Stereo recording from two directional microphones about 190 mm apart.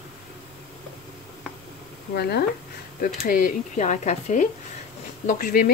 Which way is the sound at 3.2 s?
45° left (ahead or behind).